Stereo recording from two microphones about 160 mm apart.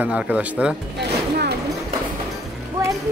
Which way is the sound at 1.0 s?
90° right.